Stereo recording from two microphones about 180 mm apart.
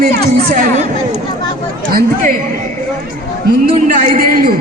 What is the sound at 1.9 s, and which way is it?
Speech, 50° right (ahead or behind).